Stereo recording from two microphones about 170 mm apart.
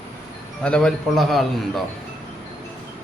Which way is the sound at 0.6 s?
5° left (ahead or behind).